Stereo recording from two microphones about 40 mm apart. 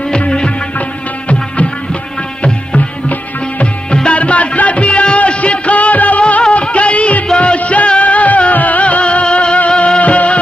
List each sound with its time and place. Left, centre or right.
2.4 s music: left
3.9 s music: left
4.2 s music: left
6.5 s music of bollywood: left
7.3 s music: left